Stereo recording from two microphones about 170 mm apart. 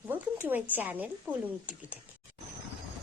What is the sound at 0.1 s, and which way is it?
Speech, 10° right (ahead or behind).